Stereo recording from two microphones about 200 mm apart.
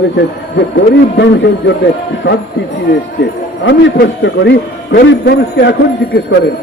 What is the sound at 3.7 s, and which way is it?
A man's voice, 65° left (ahead or behind).